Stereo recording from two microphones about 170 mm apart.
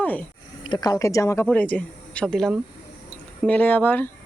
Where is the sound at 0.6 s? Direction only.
25° left (ahead or behind).